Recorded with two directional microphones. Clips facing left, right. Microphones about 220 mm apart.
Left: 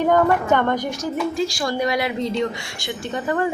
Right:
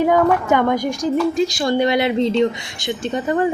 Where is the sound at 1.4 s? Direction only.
25° right (ahead or behind).